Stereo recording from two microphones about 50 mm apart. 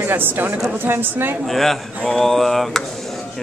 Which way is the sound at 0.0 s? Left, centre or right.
Right.